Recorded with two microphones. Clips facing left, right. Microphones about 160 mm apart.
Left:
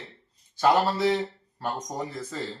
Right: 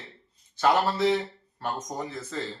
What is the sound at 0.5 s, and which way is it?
Speech, centre (ahead or behind).